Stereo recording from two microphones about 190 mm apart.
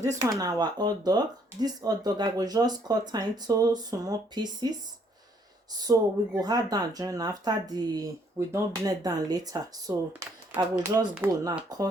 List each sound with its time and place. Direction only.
0.2 s speech: 20° right (ahead or behind)
5.9 s speech: 20° right (ahead or behind)